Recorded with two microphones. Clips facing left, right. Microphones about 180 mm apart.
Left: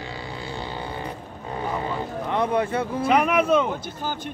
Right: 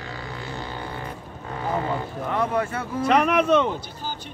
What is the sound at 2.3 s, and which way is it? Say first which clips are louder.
Speech: left 1 dB; 15° left (ahead or behind).